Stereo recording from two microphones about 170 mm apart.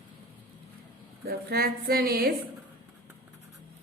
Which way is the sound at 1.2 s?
70° right (ahead or behind).